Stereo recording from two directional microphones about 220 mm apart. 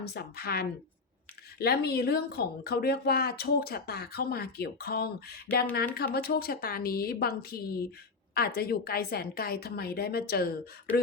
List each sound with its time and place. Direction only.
0.0 s speech: 45° left (ahead or behind)